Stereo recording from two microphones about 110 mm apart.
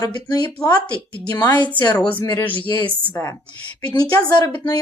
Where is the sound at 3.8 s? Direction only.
40° left (ahead or behind).